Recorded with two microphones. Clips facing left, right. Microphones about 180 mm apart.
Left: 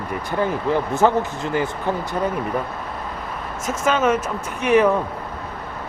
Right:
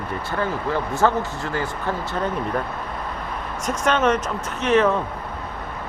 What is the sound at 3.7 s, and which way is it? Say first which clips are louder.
Speech: left 1 dB; 5° left (ahead or behind).